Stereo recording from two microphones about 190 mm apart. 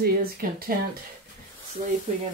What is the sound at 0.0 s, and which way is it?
Speech, 50° right (ahead or behind).